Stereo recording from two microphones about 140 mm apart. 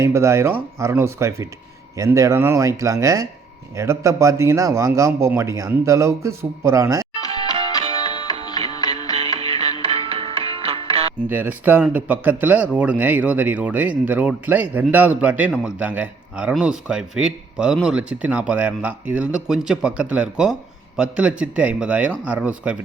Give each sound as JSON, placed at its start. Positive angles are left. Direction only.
{"t": 0.0, "sound": "speech", "side_deg": -20}
{"t": 8.0, "sound": "music", "side_deg": 35}
{"t": 9.1, "sound": "music", "side_deg": -50}
{"t": 11.3, "sound": "speech", "side_deg": -15}